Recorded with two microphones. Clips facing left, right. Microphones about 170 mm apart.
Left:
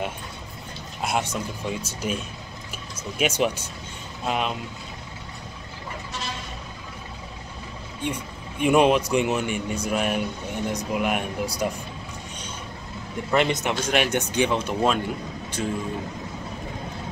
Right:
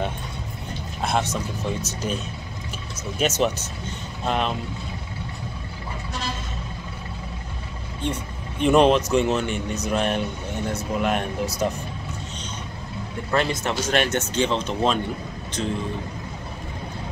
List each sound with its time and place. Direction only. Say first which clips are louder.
1.0 s speech: right 2 dB; 10° left (ahead or behind)
3.2 s speech: right 1 dB; 10° left (ahead or behind)
8.0 s speech: right 2 dB; 10° left (ahead or behind)
13.3 s speech: left 1 dB; 20° left (ahead or behind)